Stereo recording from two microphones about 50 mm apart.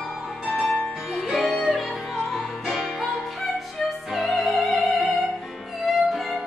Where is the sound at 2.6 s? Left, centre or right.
Centre.